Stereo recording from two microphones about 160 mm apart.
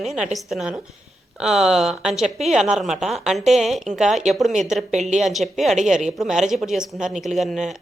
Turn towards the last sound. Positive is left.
turn(degrees=0)  # may be behind; listen again after turning